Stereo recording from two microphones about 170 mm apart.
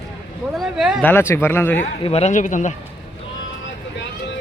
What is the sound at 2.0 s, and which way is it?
Speech, 40° left (ahead or behind).